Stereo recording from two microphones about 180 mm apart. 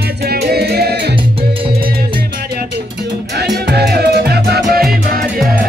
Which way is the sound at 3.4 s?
65° right (ahead or behind).